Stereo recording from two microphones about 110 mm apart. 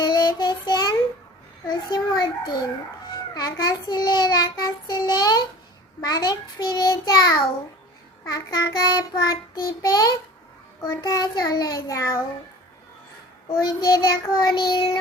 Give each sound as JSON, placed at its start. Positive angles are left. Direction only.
{"t": 0.0, "sound": "child singing", "side_deg": 40}
{"t": 1.6, "sound": "a child's voice", "side_deg": 45}
{"t": 3.1, "sound": "child singing", "side_deg": 40}
{"t": 13.6, "sound": "child singing", "side_deg": 40}